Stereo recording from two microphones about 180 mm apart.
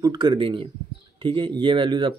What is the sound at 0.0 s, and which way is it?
Speech, 25° right (ahead or behind).